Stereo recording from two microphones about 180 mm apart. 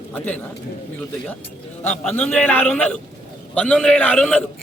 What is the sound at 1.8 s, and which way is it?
A man's voice, 10° left (ahead or behind).